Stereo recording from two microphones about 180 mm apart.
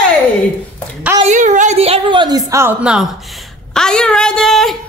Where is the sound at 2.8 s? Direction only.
5° right (ahead or behind).